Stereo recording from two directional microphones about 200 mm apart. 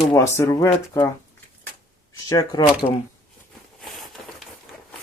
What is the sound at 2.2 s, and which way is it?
Speech, 20° left (ahead or behind).